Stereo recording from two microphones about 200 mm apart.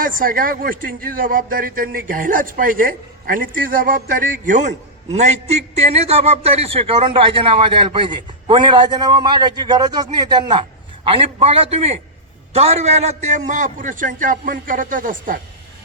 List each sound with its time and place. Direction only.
0.0 s a man's voice: 45° right (ahead or behind); by 11.9 s 30° right (ahead or behind)
13.3 s speech: 40° right (ahead or behind)